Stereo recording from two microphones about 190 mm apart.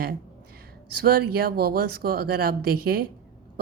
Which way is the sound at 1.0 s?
50° right (ahead or behind).